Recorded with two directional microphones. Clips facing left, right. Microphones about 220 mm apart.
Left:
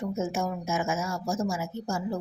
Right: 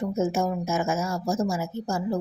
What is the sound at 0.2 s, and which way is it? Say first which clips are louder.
A woman's voice: right 8 dB; 35° right (ahead or behind).